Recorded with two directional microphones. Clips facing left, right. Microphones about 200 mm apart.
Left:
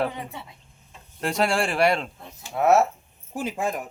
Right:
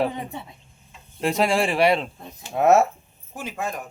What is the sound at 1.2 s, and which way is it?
Speech, 5° right (ahead or behind).